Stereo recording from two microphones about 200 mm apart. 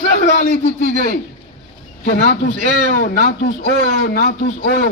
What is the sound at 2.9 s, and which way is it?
Speech, 45° left (ahead or behind).